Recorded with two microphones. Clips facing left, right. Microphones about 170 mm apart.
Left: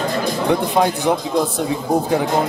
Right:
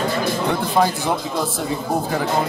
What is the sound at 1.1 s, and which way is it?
Speech, 20° left (ahead or behind).